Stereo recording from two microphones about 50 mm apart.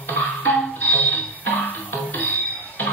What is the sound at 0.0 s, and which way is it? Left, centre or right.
Music, left.